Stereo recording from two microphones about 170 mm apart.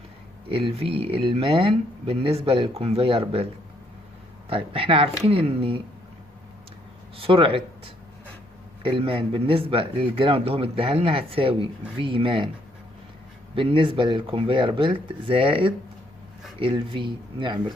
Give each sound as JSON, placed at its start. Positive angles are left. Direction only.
{"t": 0.5, "sound": "speech", "side_deg": -35}
{"t": 4.5, "sound": "speech", "side_deg": -30}
{"t": 7.2, "sound": "speech", "side_deg": -30}
{"t": 13.6, "sound": "speech", "side_deg": -30}